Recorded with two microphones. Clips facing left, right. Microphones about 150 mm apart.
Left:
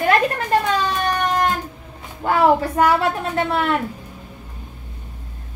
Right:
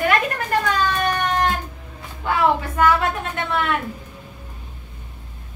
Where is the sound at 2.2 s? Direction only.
40° left (ahead or behind).